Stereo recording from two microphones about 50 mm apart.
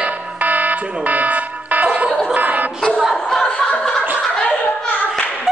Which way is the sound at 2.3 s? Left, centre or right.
Right.